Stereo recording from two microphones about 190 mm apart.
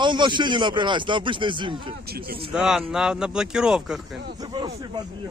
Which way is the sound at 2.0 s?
55° right (ahead or behind).